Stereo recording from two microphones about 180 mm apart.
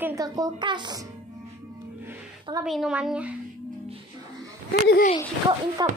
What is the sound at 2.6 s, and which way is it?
Speech, centre (ahead or behind).